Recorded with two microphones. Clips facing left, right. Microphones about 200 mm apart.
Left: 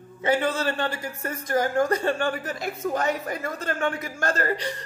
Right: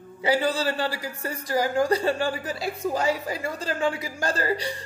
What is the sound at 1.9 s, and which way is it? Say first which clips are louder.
A woman's voice: even; 35° right (ahead or behind).